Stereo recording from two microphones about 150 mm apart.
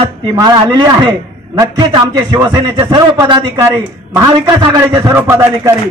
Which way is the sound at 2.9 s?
30° right (ahead or behind).